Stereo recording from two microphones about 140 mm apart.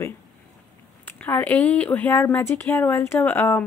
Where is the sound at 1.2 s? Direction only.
10° left (ahead or behind).